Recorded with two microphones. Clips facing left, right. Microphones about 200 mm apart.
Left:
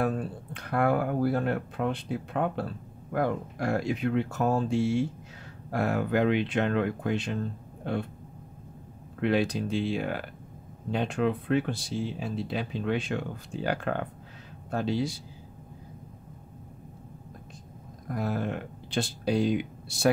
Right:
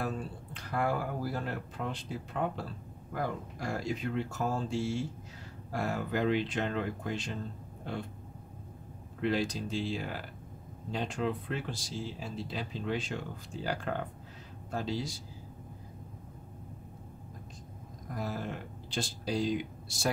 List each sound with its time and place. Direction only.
0.0 s speech: 55° left (ahead or behind)
9.2 s speech: 60° left (ahead or behind)
18.0 s speech: 60° left (ahead or behind)